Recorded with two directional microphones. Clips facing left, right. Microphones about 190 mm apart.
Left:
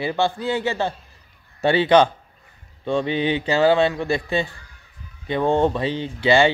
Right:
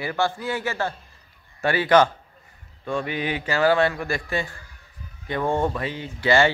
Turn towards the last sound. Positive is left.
turn(degrees=20)  # may be behind; listen again after turning